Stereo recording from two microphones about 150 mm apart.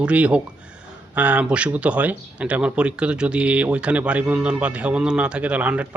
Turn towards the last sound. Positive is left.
turn(degrees=-10)  # may be behind; listen again after turning